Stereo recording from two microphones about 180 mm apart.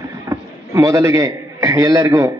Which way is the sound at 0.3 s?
20° right (ahead or behind).